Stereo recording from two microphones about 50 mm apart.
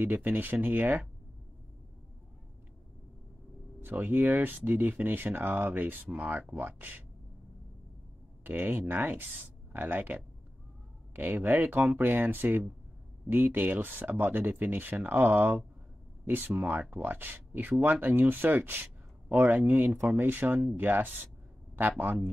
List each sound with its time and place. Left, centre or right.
0.0 s speech: right
4.0 s speech: right
8.5 s speech: right
11.1 s speech: right